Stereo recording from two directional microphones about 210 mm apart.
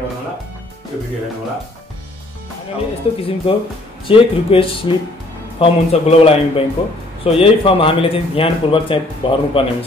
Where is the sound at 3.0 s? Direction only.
30° left (ahead or behind).